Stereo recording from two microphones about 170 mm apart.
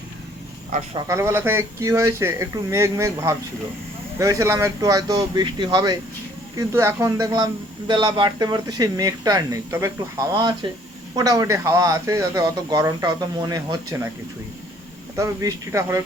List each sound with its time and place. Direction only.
0.9 s speech: 20° right (ahead or behind)
15.1 s speech: 20° right (ahead or behind)